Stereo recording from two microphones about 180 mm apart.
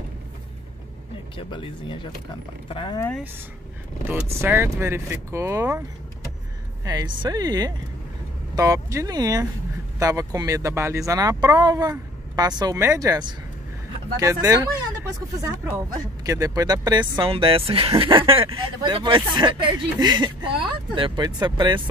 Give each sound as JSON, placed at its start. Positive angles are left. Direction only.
{"t": 1.3, "sound": "speech", "side_deg": 30}
{"t": 4.1, "sound": "speech", "side_deg": -10}
{"t": 16.3, "sound": "speech", "side_deg": -20}